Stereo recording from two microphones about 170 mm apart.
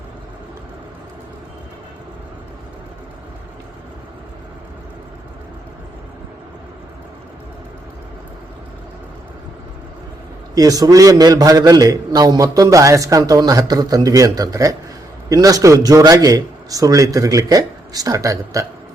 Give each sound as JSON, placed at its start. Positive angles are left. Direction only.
{"t": 10.5, "sound": "a man's voice", "side_deg": -20}